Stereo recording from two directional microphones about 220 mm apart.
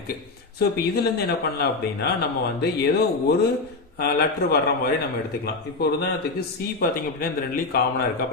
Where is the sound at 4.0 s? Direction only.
45° left (ahead or behind).